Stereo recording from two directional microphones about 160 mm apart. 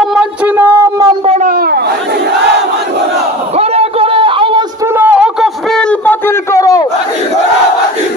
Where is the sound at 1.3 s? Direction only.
55° right (ahead or behind); by 1.8 s 70° right (ahead or behind).